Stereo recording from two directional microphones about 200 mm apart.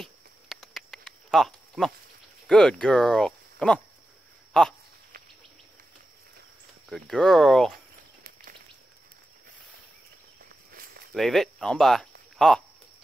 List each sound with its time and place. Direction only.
0.0 s a sound: centre (ahead or behind)
2.4 s speech: 5° left (ahead or behind)
6.9 s speech: centre (ahead or behind)
10.7 s walk: 45° right (ahead or behind)
11.1 s speech: centre (ahead or behind)